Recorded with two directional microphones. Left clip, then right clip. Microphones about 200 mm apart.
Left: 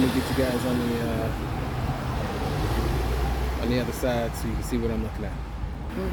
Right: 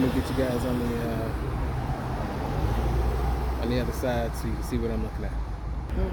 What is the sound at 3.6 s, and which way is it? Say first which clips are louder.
Speech: left 2 dB; centre (ahead or behind).